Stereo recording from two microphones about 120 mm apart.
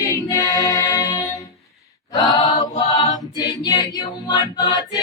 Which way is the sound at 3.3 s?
35° left (ahead or behind).